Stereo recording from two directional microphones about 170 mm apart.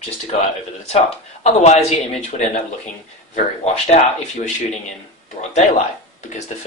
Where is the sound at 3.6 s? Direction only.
40° left (ahead or behind).